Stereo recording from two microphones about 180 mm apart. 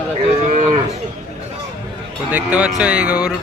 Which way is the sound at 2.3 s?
10° right (ahead or behind).